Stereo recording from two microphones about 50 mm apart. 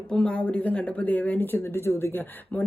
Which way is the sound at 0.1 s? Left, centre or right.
Centre.